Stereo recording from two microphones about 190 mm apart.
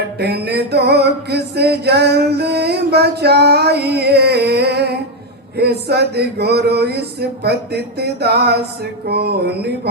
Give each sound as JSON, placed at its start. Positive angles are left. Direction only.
{"t": 0.2, "sound": "music", "side_deg": -60}